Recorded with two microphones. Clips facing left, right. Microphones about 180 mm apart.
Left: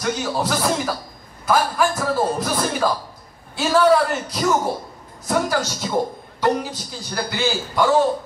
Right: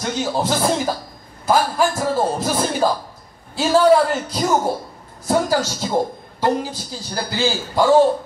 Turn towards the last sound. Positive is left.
turn(degrees=-25)  # may be behind; listen again after turning